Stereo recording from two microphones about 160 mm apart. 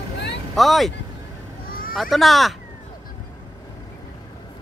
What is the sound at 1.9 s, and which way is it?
Speech, centre (ahead or behind).